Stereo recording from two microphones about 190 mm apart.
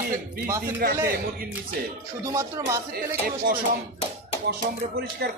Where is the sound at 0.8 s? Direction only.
50° right (ahead or behind).